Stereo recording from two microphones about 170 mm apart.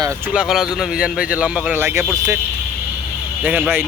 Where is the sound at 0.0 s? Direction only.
20° right (ahead or behind).